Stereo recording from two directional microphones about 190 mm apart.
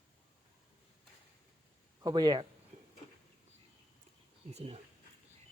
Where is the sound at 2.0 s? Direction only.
20° right (ahead or behind).